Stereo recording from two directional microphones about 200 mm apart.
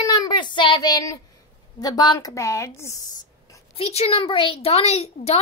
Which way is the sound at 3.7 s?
30° left (ahead or behind).